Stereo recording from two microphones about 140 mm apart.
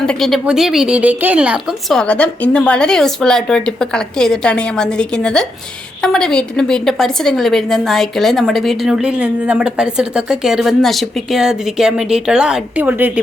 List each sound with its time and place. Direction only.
0.0 s a woman's voice: 5° left (ahead or behind); by 13.2 s 10° right (ahead or behind)